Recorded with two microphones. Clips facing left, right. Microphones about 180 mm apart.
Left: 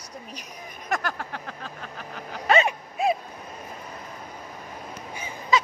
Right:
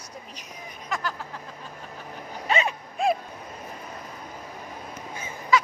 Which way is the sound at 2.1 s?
80° left.